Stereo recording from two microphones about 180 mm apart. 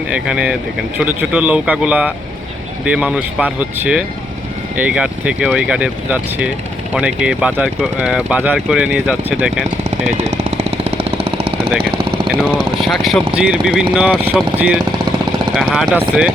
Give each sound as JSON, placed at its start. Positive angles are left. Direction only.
{"t": 0.1, "sound": "speech", "side_deg": -5}
{"t": 10.3, "sound": "jackhammer", "side_deg": -35}
{"t": 12.3, "sound": "speech", "side_deg": -5}